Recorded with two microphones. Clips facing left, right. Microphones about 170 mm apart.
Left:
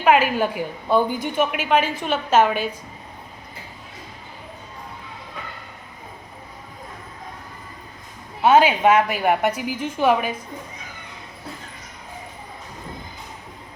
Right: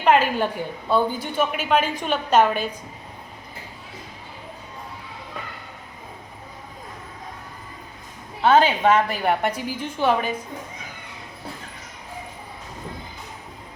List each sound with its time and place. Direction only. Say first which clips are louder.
0.0 s a woman's voice: left 1 dB; 10° left (ahead or behind)
8.4 s a woman's voice: left 2 dB; 10° left (ahead or behind)